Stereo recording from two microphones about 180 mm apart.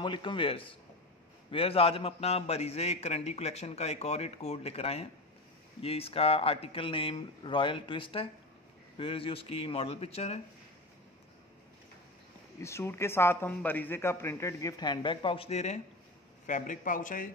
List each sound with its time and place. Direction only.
0.0 s a man's voice: 25° left (ahead or behind)
12.5 s speech: 15° left (ahead or behind); by 17.3 s 50° left (ahead or behind)